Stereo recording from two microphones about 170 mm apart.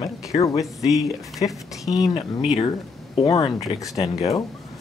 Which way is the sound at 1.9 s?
20° left (ahead or behind).